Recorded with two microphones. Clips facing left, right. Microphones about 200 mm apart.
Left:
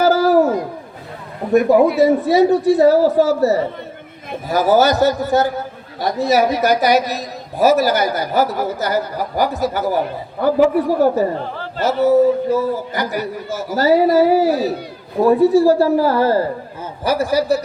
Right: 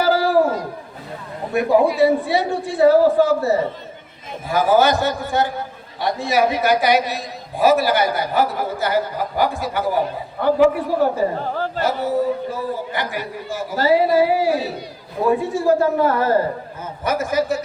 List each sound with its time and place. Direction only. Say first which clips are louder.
0.0 s howl: left 3 dB; 45° left (ahead or behind)
2.0 s a man's voice: left 4 dB; 40° left (ahead or behind)
11.4 s a man's voice: right 4 dB; 45° right (ahead or behind)
11.8 s a man's voice: left 8 dB; 40° left (ahead or behind)